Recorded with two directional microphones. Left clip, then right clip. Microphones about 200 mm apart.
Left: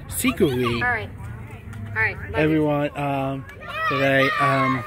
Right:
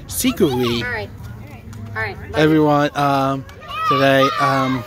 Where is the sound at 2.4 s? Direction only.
25° right (ahead or behind).